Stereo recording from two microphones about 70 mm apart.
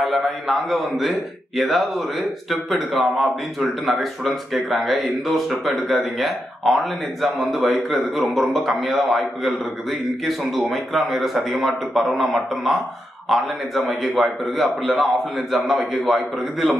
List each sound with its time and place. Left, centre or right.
0.1 s a man's voice: centre
13.8 s a man's voice: centre